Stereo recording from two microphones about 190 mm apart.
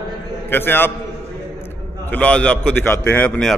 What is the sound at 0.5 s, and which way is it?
A man's voice, 10° left (ahead or behind).